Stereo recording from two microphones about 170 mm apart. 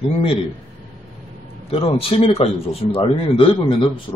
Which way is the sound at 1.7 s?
35° left (ahead or behind).